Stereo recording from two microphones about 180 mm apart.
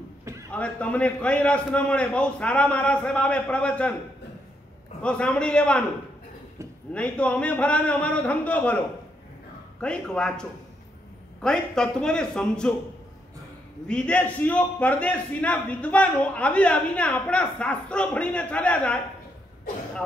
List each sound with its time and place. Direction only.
0.2 s a sound: 15° right (ahead or behind)
0.5 s a man's voice: 5° left (ahead or behind)
5.0 s a man's voice: 5° left (ahead or behind)
6.9 s a man's voice: 5° left (ahead or behind)
9.8 s a man's voice: 5° left (ahead or behind)
11.4 s a man's voice: 5° left (ahead or behind)
13.8 s a man's voice: 5° left (ahead or behind)